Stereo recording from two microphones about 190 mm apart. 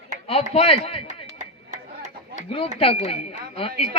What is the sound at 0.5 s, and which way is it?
Speech, 35° left (ahead or behind).